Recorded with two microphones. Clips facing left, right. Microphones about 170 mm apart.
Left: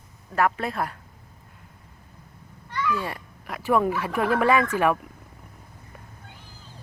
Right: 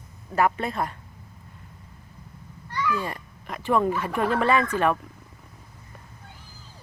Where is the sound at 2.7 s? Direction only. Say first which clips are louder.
Even; 10° right (ahead or behind).